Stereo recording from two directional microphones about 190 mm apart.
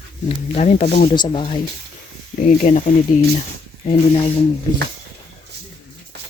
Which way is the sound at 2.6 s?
40° left (ahead or behind).